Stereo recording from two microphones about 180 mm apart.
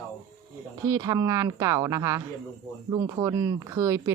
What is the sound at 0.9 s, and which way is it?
Speech, 20° right (ahead or behind).